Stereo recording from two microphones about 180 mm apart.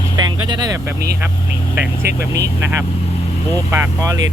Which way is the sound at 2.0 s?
65° right (ahead or behind).